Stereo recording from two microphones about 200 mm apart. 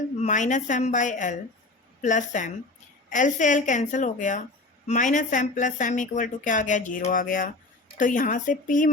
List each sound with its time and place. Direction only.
0.2 s speech: 40° left (ahead or behind)